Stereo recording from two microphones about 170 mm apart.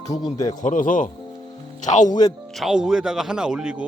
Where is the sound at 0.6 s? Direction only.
50° left (ahead or behind).